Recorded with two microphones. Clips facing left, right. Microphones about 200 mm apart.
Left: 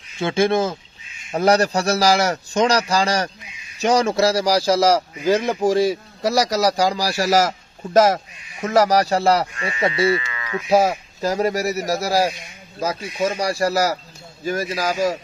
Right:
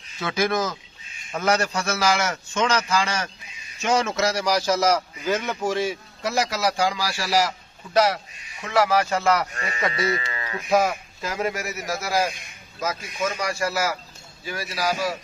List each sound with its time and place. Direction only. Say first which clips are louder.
0.2 s a man's voice: left 6 dB; 25° left (ahead or behind)
9.5 s speech: left 4 dB; 40° right (ahead or behind)
9.8 s speech: left 6 dB; 30° left (ahead or behind)
10.2 s livestock: left 4 dB; 35° right (ahead or behind)
10.7 s a man's voice: left 4 dB; 30° left (ahead or behind)